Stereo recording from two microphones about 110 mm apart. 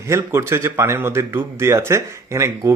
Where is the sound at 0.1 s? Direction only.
25° right (ahead or behind).